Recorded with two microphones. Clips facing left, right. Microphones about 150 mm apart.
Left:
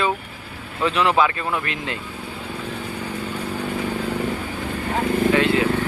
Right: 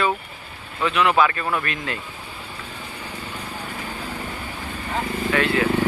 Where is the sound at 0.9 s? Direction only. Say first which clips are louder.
Even; 35° left (ahead or behind).